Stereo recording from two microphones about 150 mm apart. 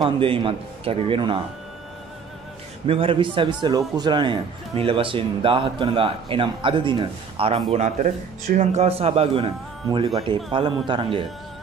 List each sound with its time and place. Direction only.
0.0 s speech: 35° right (ahead or behind)
2.9 s speech: 35° right (ahead or behind)
7.7 s a man's voice: 50° right (ahead or behind); by 11.2 s 30° right (ahead or behind)